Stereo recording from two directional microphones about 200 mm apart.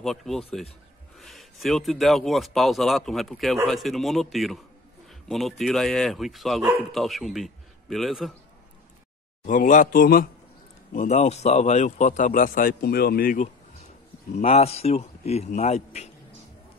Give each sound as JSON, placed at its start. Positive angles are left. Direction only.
{"t": 0.0, "sound": "a man's voice", "side_deg": 0}
{"t": 9.5, "sound": "a man's voice", "side_deg": 40}
{"t": 14.4, "sound": "a man's voice", "side_deg": 30}